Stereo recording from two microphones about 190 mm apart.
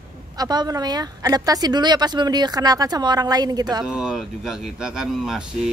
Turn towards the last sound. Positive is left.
turn(degrees=0)  # may be behind; listen again after turning